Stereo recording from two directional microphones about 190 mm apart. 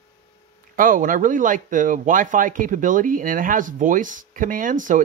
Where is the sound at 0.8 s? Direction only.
45° right (ahead or behind).